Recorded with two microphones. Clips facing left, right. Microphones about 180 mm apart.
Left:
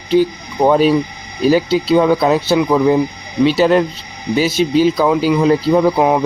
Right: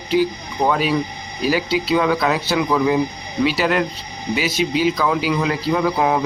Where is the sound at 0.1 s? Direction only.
25° left (ahead or behind).